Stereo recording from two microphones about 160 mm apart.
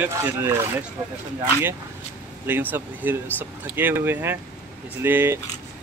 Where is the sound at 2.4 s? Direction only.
10° right (ahead or behind).